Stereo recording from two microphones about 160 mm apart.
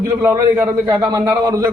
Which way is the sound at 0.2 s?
10° right (ahead or behind).